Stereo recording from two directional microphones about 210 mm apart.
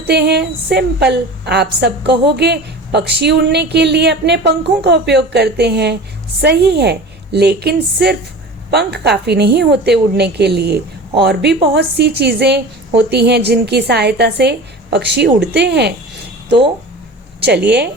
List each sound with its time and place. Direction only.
0.1 s a woman's voice: 55° right (ahead or behind)
17.4 s a woman's voice: 55° right (ahead or behind)